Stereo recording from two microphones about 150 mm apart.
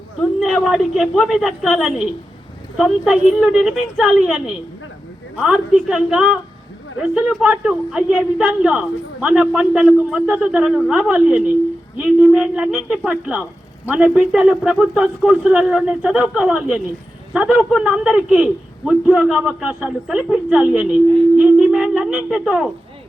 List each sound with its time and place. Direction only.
0.2 s a woman's voice: centre (ahead or behind)